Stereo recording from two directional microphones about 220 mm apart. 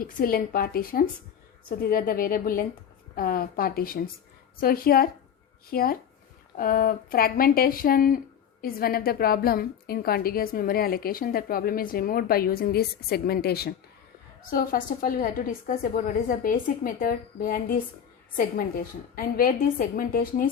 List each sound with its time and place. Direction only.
0.0 s a woman's voice: 40° left (ahead or behind)
19.1 s a woman's voice: 40° left (ahead or behind)